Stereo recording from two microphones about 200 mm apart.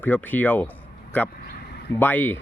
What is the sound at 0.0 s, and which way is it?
Speech, 10° left (ahead or behind).